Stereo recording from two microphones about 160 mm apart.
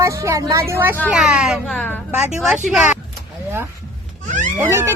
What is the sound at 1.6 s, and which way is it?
Speech, 5° left (ahead or behind).